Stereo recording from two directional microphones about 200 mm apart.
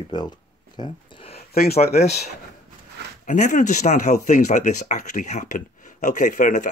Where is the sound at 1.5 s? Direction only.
50° left (ahead or behind).